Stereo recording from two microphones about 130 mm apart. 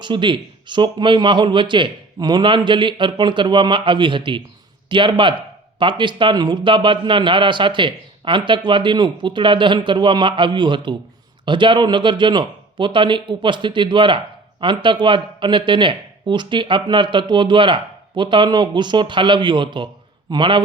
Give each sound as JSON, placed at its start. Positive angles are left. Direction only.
{"t": 0.0, "sound": "a man's voice", "side_deg": -40}